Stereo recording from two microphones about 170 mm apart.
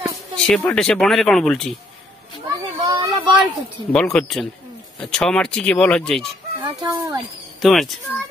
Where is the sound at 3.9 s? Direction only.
5° left (ahead or behind).